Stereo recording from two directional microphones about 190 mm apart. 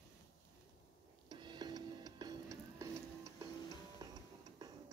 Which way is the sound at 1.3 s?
25° right (ahead or behind).